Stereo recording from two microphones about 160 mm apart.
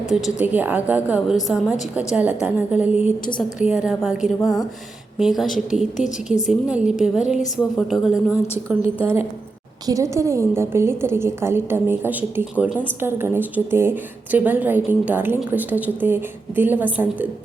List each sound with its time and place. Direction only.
0.1 s a woman's voice: 5° right (ahead or behind)